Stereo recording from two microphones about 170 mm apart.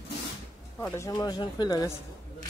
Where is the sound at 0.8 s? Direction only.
20° left (ahead or behind).